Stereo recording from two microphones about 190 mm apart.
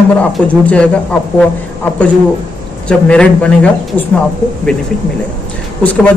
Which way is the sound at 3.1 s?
5° left (ahead or behind).